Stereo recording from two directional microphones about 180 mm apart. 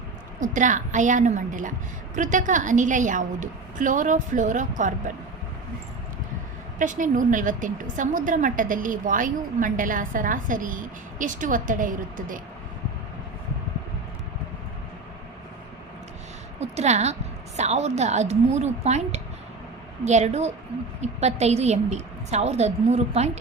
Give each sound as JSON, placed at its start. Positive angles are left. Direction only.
{"t": 0.3, "sound": "a woman's voice", "side_deg": -45}
{"t": 6.7, "sound": "a woman's voice", "side_deg": -45}
{"t": 16.6, "sound": "a woman's voice", "side_deg": -40}